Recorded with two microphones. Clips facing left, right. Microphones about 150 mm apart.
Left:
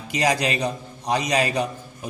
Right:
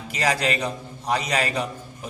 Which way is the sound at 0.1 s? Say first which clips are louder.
Left 2 dB; 20° left (ahead or behind).